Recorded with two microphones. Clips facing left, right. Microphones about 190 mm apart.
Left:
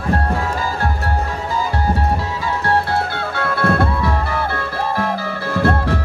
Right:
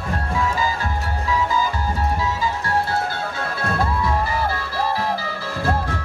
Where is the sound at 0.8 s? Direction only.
60° left (ahead or behind).